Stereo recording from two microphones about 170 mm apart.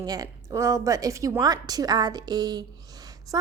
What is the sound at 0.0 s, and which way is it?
A woman's voice, 20° right (ahead or behind).